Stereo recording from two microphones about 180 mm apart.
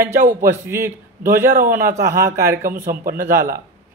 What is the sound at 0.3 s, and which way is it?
A man's voice, 15° right (ahead or behind).